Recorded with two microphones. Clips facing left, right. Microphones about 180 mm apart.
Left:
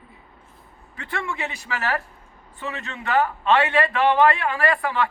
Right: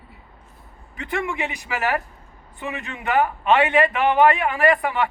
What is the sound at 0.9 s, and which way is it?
A man's voice, 15° right (ahead or behind).